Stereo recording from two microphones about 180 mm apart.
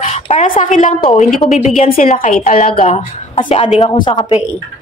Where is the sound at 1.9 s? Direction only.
50° left (ahead or behind).